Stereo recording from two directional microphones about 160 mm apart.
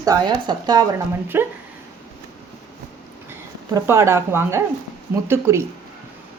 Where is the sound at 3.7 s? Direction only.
15° right (ahead or behind).